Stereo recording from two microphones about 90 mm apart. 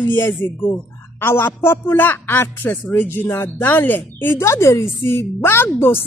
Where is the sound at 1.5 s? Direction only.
25° left (ahead or behind).